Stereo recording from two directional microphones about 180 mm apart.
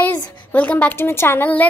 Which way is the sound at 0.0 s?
10° left (ahead or behind).